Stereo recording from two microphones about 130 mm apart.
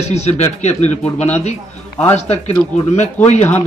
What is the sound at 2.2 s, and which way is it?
Speech, 55° left (ahead or behind).